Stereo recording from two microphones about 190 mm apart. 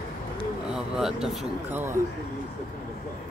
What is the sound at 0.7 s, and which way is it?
Speech, centre (ahead or behind).